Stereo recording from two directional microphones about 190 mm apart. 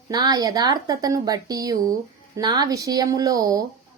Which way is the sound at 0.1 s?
20° right (ahead or behind).